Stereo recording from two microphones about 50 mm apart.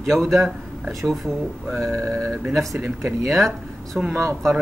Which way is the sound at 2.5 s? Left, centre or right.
Centre.